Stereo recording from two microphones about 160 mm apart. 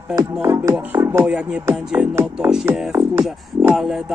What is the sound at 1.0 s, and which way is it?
Speech, 15° right (ahead or behind).